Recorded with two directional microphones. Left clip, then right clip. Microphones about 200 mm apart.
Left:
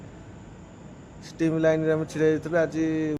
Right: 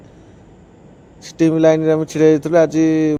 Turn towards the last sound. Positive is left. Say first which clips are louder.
# right 11 dB
turn(degrees=-30)  # may be behind; listen again after turning